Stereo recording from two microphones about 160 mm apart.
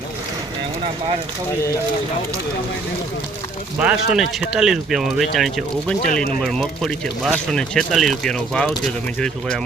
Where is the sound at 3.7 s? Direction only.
5° right (ahead or behind).